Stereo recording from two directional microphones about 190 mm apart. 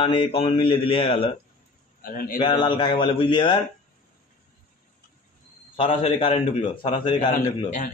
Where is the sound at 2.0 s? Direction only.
50° left (ahead or behind).